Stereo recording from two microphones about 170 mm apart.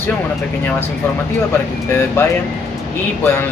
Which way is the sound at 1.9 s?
15° left (ahead or behind).